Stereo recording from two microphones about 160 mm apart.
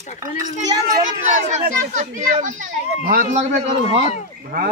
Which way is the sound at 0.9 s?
45° right (ahead or behind).